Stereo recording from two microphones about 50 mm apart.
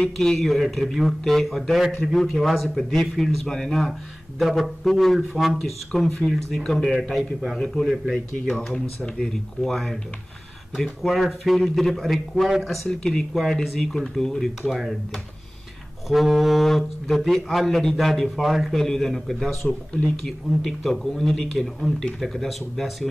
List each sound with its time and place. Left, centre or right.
0.0 s speech: centre
0.4 s speech: centre
12.4 s speech: centre
12.8 s speech: centre
13.3 s speech: centre
14.7 s speech: centre
16.1 s speech: centre
18.7 s speech: centre
19.9 s speech: left
20.6 s speech: centre